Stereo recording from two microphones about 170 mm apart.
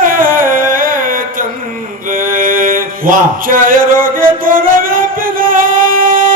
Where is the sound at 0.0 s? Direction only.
55° right (ahead or behind).